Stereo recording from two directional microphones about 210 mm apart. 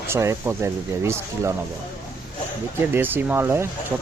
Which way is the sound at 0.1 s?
15° right (ahead or behind).